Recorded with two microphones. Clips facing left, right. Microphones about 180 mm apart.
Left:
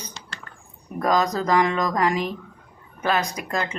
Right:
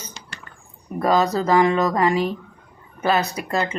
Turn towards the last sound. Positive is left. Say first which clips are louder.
# right 4 dB
turn(degrees=-5)  # may be behind; listen again after turning